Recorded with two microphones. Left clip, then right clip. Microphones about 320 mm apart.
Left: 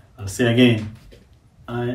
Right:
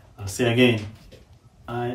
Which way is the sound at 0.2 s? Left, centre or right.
Centre.